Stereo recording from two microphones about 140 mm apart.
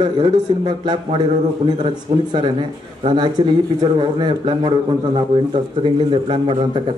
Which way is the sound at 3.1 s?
35° right (ahead or behind).